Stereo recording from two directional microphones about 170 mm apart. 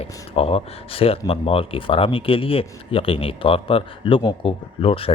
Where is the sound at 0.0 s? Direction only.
35° left (ahead or behind).